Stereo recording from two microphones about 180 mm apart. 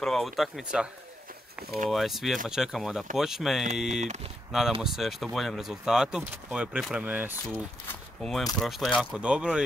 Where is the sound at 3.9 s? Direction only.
40° right (ahead or behind).